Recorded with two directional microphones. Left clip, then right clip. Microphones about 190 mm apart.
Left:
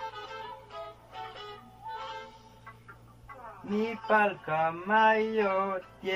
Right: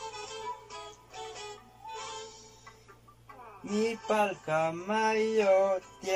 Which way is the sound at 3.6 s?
15° right (ahead or behind).